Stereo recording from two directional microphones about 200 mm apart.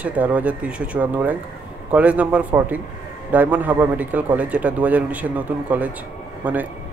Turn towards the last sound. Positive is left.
turn(degrees=-5)  # may be behind; listen again after turning